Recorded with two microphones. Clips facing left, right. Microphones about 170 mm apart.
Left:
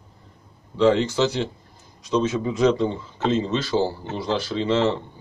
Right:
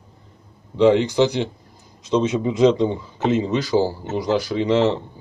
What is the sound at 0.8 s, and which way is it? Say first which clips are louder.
Speech: right 3 dB; 15° right (ahead or behind).